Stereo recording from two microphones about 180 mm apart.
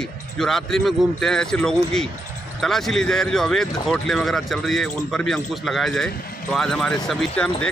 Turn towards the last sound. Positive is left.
turn(degrees=5)  # may be behind; listen again after turning